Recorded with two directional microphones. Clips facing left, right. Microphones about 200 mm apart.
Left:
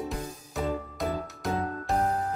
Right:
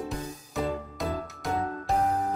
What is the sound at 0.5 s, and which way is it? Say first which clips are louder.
Music: even; centre (ahead or behind).